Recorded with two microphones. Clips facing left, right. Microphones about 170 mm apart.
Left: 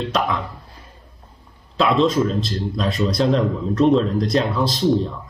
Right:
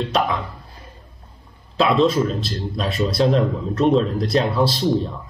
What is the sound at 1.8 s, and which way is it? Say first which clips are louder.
Speech: even; 5° right (ahead or behind).